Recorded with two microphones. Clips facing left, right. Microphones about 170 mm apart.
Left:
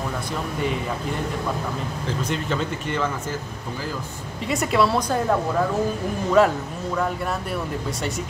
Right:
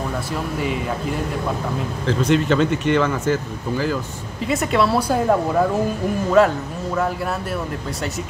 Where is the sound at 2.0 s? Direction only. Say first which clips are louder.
Right 9 dB; 80° right.